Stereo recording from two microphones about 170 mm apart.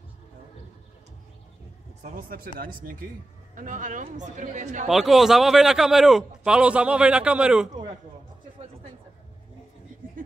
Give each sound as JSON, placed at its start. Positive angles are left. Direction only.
{"t": 2.0, "sound": "a man's voice", "side_deg": -55}
{"t": 4.8, "sound": "a man's voice", "side_deg": 0}